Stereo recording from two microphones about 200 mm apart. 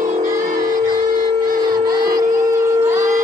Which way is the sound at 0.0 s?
40° right (ahead or behind).